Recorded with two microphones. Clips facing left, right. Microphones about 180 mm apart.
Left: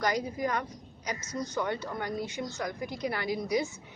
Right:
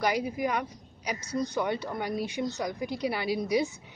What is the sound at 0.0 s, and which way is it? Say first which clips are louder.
A woman's voice: right 2 dB; 10° right (ahead or behind).